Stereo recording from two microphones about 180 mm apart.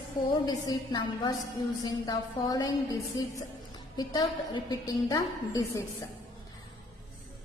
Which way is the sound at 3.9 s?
20° left (ahead or behind).